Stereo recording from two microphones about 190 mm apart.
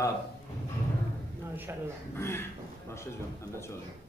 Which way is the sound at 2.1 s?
15° left (ahead or behind).